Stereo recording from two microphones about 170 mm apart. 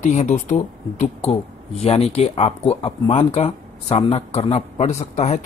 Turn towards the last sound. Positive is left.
turn(degrees=40)  # may be behind; listen again after turning